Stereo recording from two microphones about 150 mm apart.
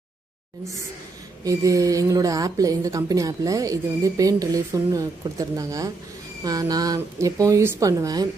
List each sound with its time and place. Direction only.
1.4 s a woman's voice: 25° right (ahead or behind)